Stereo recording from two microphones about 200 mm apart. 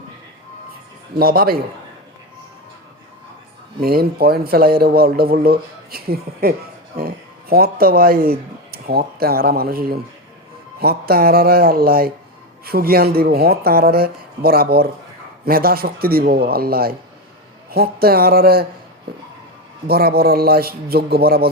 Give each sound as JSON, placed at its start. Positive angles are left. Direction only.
{"t": 1.2, "sound": "speech", "side_deg": -50}
{"t": 3.8, "sound": "speech", "side_deg": -50}
{"t": 19.9, "sound": "speech", "side_deg": -50}